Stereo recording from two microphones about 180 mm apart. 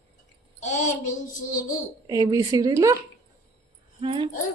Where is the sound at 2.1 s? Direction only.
20° right (ahead or behind).